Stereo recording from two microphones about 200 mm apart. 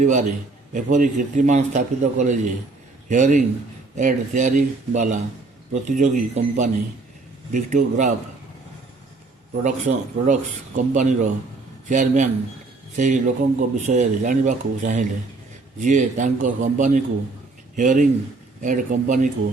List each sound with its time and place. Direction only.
0.0 s speech: 35° right (ahead or behind)
9.6 s speech: 40° right (ahead or behind)